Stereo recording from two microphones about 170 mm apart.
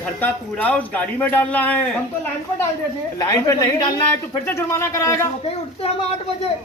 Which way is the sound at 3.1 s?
20° left (ahead or behind).